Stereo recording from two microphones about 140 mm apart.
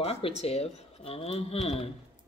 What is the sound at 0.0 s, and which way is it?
Speech, 45° left (ahead or behind).